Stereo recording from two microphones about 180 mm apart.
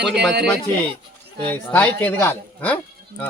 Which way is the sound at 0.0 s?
70° right (ahead or behind).